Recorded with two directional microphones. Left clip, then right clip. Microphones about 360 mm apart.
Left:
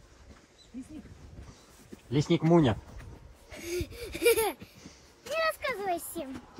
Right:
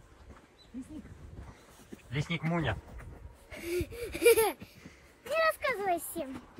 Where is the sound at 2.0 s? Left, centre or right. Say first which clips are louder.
Left 9 dB; centre.